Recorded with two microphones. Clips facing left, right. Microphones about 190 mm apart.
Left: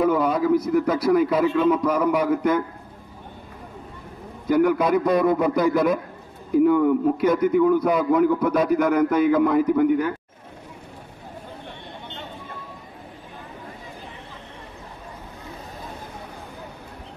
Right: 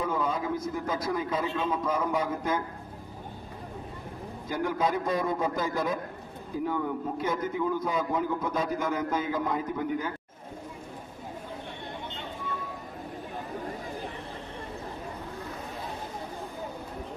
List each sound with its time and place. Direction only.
0.0 s a man's voice: 70° left (ahead or behind)
4.5 s a man's voice: 70° left (ahead or behind)